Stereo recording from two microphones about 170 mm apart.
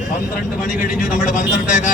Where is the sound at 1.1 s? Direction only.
50° left (ahead or behind).